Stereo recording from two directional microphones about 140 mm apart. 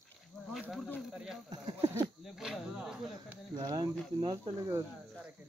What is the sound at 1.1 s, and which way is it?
Speech, 5° right (ahead or behind).